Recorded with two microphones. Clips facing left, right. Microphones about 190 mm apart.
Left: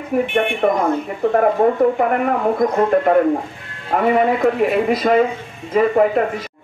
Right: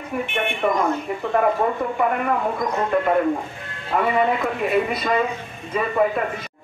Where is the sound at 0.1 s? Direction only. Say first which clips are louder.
Left 8 dB; 50° left (ahead or behind).